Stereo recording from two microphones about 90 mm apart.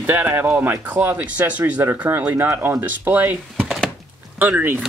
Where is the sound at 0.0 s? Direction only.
20° right (ahead or behind).